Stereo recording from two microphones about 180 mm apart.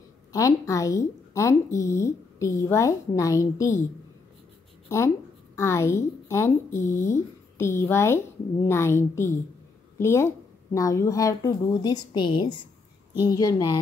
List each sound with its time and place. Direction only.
0.3 s a woman's voice: 15° left (ahead or behind)
4.8 s a woman's voice: 15° left (ahead or behind)